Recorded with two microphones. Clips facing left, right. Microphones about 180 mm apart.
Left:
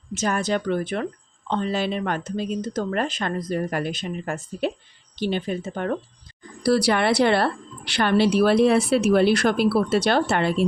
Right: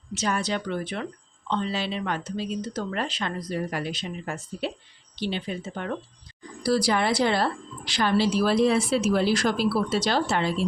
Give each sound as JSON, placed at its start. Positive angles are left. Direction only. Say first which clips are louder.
{"t": 0.1, "sound": "speech", "louder": "left 4 dB", "side_deg": 50}
{"t": 6.6, "sound": "a woman's voice", "louder": "left 3 dB", "side_deg": 65}